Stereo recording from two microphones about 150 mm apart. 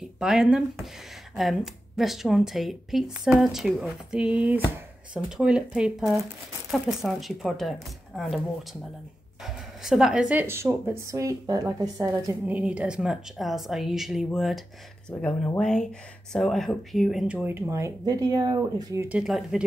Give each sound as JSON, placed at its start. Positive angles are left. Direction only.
{"t": 0.2, "sound": "a woman's voice", "side_deg": -5}
{"t": 9.4, "sound": "a woman's voice", "side_deg": 0}
{"t": 19.0, "sound": "speech", "side_deg": -5}